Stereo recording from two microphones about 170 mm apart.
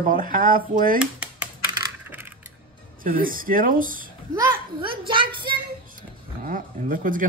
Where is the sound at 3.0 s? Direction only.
55° right (ahead or behind).